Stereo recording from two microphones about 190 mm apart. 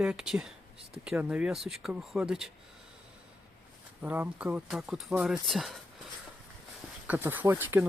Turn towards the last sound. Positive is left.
turn(degrees=-10)  # may be behind; listen again after turning